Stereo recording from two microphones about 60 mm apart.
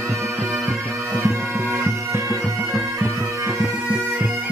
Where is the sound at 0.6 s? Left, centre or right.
Right.